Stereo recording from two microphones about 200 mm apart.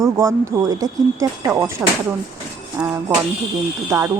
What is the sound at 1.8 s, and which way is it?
Speech, 5° right (ahead or behind).